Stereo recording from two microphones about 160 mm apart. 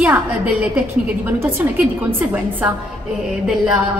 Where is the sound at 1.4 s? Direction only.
15° right (ahead or behind).